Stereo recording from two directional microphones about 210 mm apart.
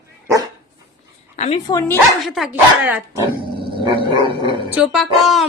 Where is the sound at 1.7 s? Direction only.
15° left (ahead or behind).